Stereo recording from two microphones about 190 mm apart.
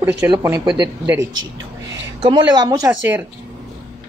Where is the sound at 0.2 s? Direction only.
15° right (ahead or behind).